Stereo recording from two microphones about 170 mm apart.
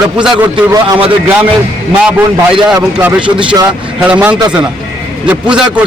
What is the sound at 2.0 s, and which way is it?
Speech, 5° right (ahead or behind).